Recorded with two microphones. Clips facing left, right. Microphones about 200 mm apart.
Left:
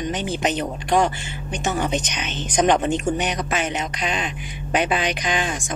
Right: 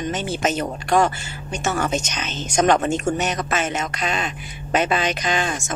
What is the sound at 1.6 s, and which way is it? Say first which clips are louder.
Speech: even; 20° left (ahead or behind).